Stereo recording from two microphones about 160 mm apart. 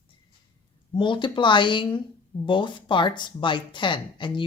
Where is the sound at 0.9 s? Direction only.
30° left (ahead or behind).